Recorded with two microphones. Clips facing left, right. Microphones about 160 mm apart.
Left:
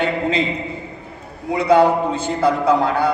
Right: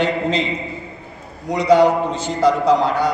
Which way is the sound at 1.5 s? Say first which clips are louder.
Right 1 dB; 55° left (ahead or behind).